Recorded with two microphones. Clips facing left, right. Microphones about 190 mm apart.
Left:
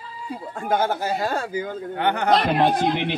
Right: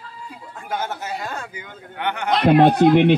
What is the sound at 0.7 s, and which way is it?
Speech, 35° left (ahead or behind).